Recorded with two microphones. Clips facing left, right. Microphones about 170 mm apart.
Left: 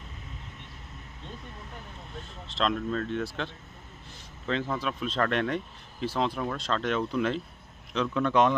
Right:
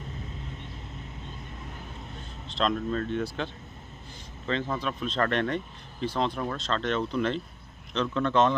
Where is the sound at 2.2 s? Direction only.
Centre (ahead or behind).